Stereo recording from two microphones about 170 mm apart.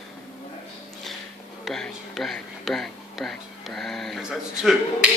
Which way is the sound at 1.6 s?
Centre (ahead or behind).